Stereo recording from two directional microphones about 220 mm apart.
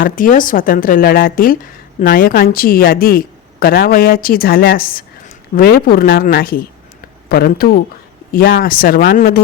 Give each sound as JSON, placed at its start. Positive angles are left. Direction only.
{"t": 0.0, "sound": "a woman's voice", "side_deg": 40}